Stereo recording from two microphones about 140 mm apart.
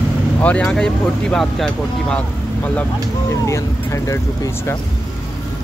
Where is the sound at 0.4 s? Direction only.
10° left (ahead or behind).